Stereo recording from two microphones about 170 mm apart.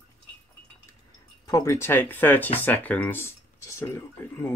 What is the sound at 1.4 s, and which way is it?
Speech, 20° left (ahead or behind).